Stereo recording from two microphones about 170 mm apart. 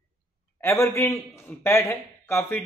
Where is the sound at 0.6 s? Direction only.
15° left (ahead or behind).